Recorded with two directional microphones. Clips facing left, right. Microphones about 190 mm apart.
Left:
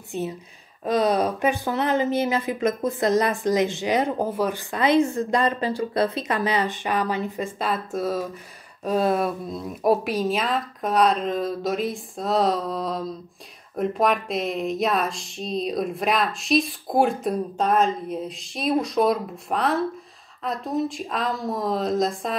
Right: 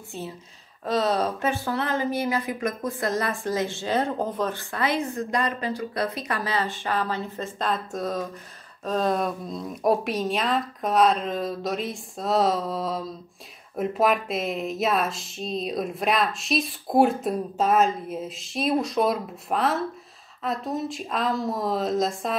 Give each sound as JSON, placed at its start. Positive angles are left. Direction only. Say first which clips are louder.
{"t": 0.1, "sound": "speech", "louder": "left 7 dB", "side_deg": 15}